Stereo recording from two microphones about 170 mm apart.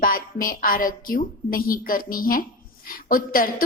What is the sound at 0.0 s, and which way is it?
A woman's voice, 55° left (ahead or behind).